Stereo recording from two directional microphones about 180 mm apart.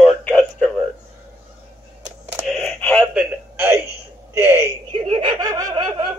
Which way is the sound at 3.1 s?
10° right (ahead or behind).